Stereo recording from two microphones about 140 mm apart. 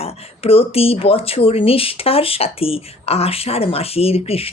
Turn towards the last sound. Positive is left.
turn(degrees=45)  # may be behind; listen again after turning